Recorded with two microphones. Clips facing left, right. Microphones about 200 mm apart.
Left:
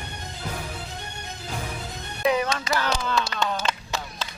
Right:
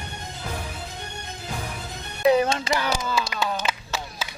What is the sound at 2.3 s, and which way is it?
Music, 30° right (ahead or behind).